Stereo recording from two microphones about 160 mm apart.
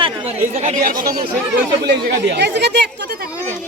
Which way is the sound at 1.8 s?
90° right.